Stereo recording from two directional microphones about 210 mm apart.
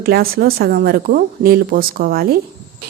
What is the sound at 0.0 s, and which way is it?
A woman's voice, 45° right (ahead or behind).